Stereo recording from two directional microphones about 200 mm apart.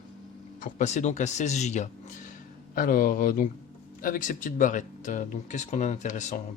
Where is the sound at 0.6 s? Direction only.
35° left (ahead or behind).